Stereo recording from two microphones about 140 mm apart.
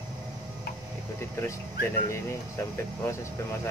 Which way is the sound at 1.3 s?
20° left (ahead or behind).